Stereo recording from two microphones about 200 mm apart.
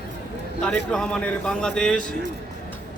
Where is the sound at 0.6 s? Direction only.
5° left (ahead or behind).